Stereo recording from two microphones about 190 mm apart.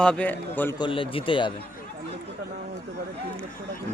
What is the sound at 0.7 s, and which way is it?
Speech, 25° left (ahead or behind).